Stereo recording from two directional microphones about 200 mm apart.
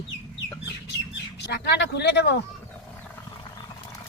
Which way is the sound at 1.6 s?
60° left (ahead or behind).